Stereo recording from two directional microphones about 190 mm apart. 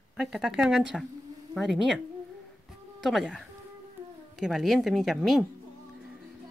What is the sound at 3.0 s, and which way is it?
A woman's voice, centre (ahead or behind).